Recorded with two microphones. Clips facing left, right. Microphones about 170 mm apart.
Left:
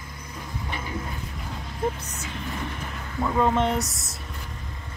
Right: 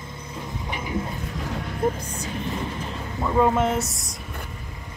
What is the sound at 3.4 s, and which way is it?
Speech, 5° right (ahead or behind).